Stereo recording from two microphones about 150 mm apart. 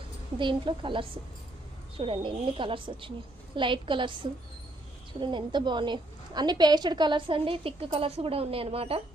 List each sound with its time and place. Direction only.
0.3 s a woman's voice: 35° right (ahead or behind)